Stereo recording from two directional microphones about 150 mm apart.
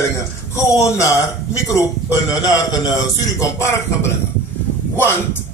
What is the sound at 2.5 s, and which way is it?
A man's voice, 25° left (ahead or behind).